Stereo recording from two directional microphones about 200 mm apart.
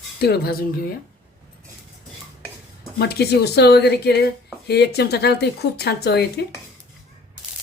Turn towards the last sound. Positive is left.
turn(degrees=55)  # may be behind; listen again after turning